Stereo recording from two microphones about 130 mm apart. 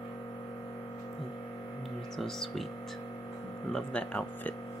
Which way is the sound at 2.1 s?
Centre (ahead or behind).